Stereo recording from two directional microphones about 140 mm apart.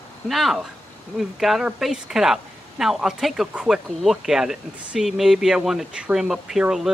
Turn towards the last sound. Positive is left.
turn(degrees=-5)  # may be behind; listen again after turning